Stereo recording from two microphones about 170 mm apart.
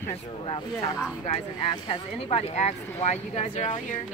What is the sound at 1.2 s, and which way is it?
Speech, 35° left (ahead or behind).